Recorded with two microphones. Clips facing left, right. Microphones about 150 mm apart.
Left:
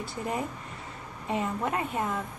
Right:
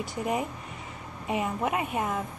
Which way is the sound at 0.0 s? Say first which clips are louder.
Right 3 dB; 15° right (ahead or behind).